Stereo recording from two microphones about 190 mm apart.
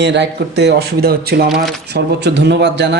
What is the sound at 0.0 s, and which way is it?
Speech, 65° right (ahead or behind).